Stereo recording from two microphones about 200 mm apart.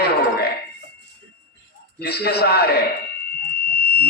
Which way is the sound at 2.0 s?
55° left (ahead or behind).